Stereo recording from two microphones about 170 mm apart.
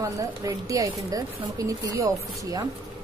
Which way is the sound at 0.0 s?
20° right (ahead or behind).